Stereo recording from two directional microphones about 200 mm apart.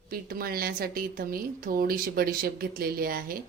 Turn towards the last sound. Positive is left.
turn(degrees=-45)  # may be behind; listen again after turning